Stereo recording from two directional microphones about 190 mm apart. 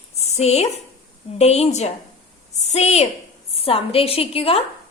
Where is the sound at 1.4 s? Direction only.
35° left (ahead or behind).